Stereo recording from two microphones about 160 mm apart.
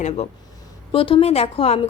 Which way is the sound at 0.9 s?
35° left (ahead or behind).